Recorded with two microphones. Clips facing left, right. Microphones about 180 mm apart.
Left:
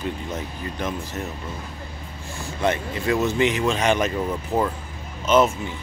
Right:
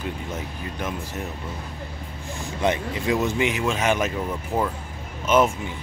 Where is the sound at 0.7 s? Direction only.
10° right (ahead or behind).